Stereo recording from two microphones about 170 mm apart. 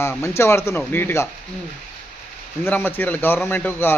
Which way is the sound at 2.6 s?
15° left (ahead or behind).